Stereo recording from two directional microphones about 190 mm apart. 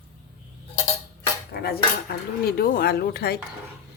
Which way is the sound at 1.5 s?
55° left (ahead or behind).